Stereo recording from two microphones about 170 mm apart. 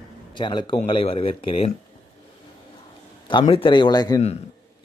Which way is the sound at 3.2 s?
30° left (ahead or behind).